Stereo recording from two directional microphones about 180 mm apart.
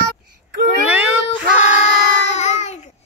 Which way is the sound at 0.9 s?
10° right (ahead or behind).